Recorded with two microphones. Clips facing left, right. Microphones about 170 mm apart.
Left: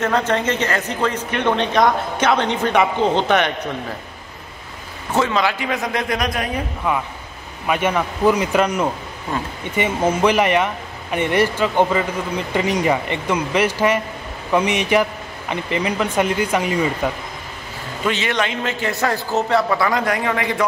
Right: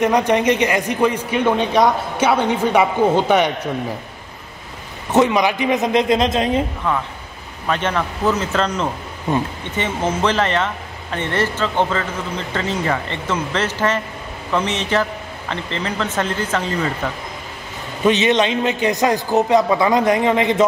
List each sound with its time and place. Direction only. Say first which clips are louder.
0.0 s speech: right 4 dB; 15° right (ahead or behind)
5.1 s a man's voice: right 4 dB; 15° right (ahead or behind)
6.8 s speech: even; 10° left (ahead or behind)
9.3 s a man's voice: right 5 dB; 20° right (ahead or behind)
9.8 s speech: left 2 dB; 10° left (ahead or behind)
18.0 s a man's voice: right 6 dB; 20° right (ahead or behind)